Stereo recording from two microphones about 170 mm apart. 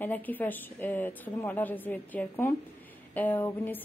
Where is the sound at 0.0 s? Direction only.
10° left (ahead or behind).